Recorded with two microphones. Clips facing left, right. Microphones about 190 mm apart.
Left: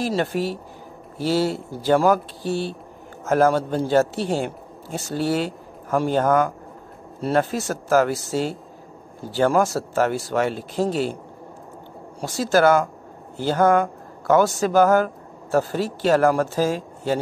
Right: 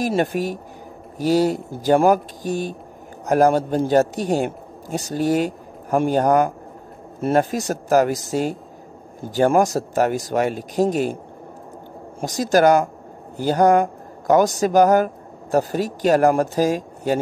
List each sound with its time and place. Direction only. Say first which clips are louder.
0.2 s speech: right 2 dB; 15° right (ahead or behind)
12.2 s a man's voice: right 2 dB; 15° right (ahead or behind)